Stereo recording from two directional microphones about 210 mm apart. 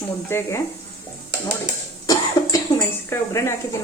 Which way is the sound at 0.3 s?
10° left (ahead or behind).